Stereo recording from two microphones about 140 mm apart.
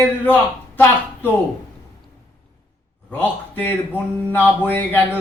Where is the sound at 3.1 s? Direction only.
15° left (ahead or behind).